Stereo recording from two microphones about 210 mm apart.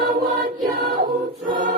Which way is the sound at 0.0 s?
45° right (ahead or behind).